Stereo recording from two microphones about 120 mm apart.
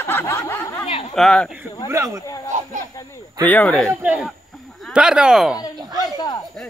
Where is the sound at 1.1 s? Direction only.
5° left (ahead or behind).